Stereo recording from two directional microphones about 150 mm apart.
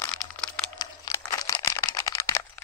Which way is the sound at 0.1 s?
5° left (ahead or behind).